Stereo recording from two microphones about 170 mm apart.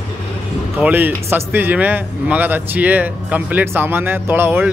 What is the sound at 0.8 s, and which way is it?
Speech, 10° right (ahead or behind).